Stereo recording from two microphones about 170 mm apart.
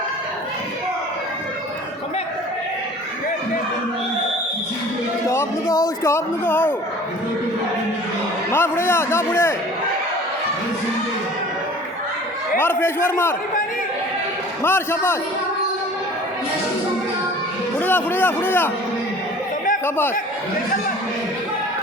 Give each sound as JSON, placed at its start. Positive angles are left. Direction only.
{"t": 5.3, "sound": "a man's voice", "side_deg": 15}
{"t": 8.5, "sound": "a man's voice", "side_deg": 15}
{"t": 12.5, "sound": "a man's voice", "side_deg": 10}
{"t": 14.6, "sound": "a man's voice", "side_deg": 15}
{"t": 17.7, "sound": "a man's voice", "side_deg": 10}